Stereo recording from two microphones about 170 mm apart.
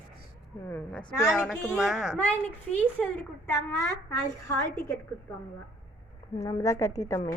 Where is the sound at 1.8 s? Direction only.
Centre (ahead or behind).